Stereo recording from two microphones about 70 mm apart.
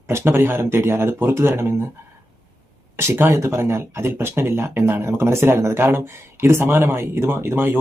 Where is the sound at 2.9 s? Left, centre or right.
Right.